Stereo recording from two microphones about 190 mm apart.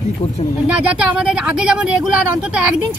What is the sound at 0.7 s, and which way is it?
Speech, 5° right (ahead or behind).